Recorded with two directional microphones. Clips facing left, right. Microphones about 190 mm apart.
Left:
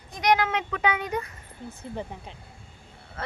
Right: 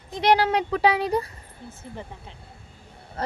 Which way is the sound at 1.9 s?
15° left (ahead or behind).